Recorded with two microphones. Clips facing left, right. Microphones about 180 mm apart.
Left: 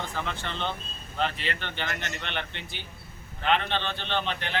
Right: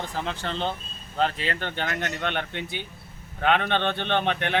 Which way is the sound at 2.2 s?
50° right (ahead or behind).